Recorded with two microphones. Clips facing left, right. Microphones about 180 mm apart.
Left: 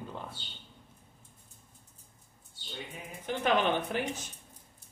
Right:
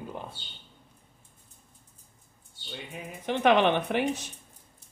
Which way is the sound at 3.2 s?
70° right (ahead or behind).